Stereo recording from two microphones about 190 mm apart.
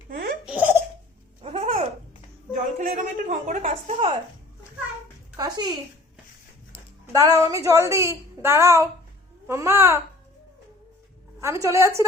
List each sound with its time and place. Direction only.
0.1 s laughter: 50° right (ahead or behind)
0.4 s laughter: 10° right (ahead or behind)
1.4 s babbling: 30° right (ahead or behind)
2.7 s a woman's voice: 40° right (ahead or behind)
5.4 s speech: 20° right (ahead or behind)
7.1 s a woman's voice: 15° right (ahead or behind)
11.3 s a woman's voice: 15° right (ahead or behind)